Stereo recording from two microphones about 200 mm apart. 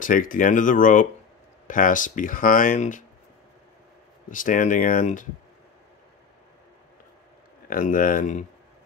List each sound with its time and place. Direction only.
0.0 s speech: 40° left (ahead or behind)
4.3 s speech: 40° left (ahead or behind)
7.7 s speech: 45° left (ahead or behind)